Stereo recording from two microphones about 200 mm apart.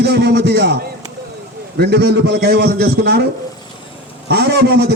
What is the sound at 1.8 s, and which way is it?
A man's voice, 55° right (ahead or behind).